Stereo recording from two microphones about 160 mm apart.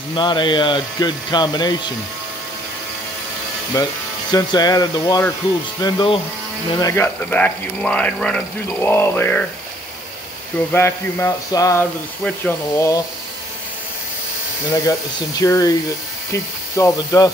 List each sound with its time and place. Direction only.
0.1 s speech: 30° left (ahead or behind)
3.8 s speech: 25° left (ahead or behind)
10.7 s speech: 15° left (ahead or behind)
14.7 s speech: 20° left (ahead or behind)
16.7 s speech: 20° left (ahead or behind)